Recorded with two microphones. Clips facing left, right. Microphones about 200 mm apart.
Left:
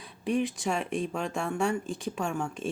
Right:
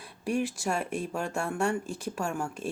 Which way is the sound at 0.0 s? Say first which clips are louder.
Left 1 dB; 5° right (ahead or behind).